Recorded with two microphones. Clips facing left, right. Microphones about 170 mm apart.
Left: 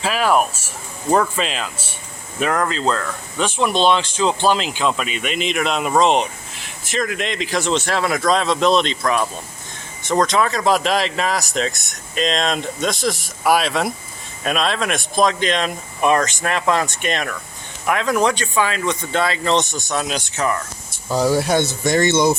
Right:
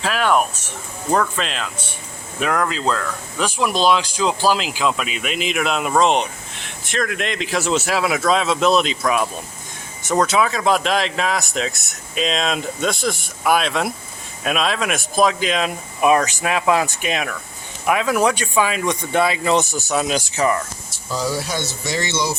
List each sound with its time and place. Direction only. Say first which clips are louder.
0.0 s speech: left 1 dB; 5° left (ahead or behind)
21.1 s speech: left 6 dB; 55° left (ahead or behind)